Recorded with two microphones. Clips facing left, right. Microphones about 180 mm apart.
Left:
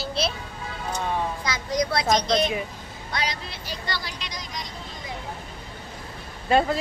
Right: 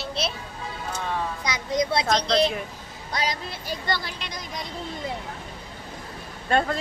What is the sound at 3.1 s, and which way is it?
Speech, 45° right (ahead or behind).